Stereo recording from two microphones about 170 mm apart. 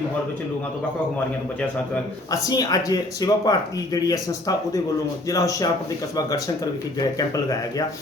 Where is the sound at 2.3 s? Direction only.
20° left (ahead or behind).